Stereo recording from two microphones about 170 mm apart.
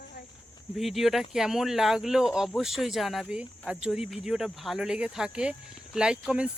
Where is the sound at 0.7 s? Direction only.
Centre (ahead or behind).